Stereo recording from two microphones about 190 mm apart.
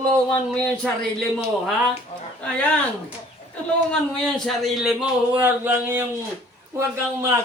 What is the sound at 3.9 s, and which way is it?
Speech, 5° left (ahead or behind).